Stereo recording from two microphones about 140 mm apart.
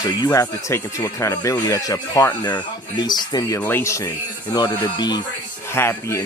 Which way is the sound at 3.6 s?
15° left (ahead or behind).